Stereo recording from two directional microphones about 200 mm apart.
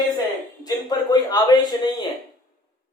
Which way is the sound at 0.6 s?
20° left (ahead or behind).